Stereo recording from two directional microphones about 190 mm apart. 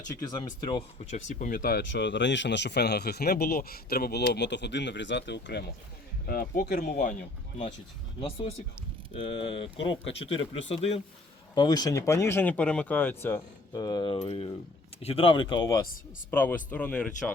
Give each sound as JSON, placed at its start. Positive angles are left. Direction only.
{"t": 1.1, "sound": "speech", "side_deg": 45}
{"t": 1.8, "sound": "speech", "side_deg": 65}
{"t": 6.2, "sound": "speech", "side_deg": 50}
{"t": 8.2, "sound": "speech", "side_deg": 30}
{"t": 11.5, "sound": "speech", "side_deg": 20}
{"t": 13.7, "sound": "speech", "side_deg": 20}
{"t": 16.3, "sound": "speech", "side_deg": 10}